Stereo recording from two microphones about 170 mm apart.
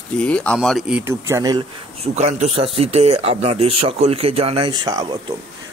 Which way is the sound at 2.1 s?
40° right (ahead or behind).